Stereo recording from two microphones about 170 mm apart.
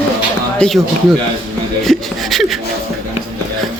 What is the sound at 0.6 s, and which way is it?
Speech, centre (ahead or behind).